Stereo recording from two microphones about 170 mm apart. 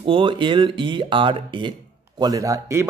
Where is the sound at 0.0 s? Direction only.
30° right (ahead or behind).